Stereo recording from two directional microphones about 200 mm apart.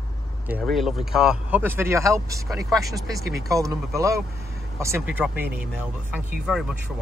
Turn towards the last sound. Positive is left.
turn(degrees=-5)  # may be behind; listen again after turning